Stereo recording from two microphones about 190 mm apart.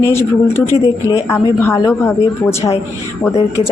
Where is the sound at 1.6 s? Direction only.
15° left (ahead or behind).